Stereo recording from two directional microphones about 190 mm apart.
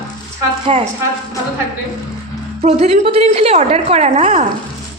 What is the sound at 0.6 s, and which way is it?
Speech, 30° right (ahead or behind).